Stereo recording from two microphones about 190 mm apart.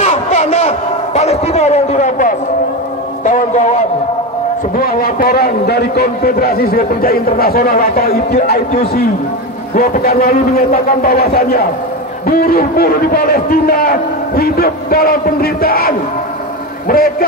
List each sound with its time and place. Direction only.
0.0 s a sound: 35° left (ahead or behind)
3.3 s a man's voice: 40° left (ahead or behind)
4.7 s a man's voice: 50° left (ahead or behind)